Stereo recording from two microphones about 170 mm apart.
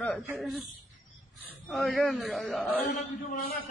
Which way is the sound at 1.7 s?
Centre (ahead or behind).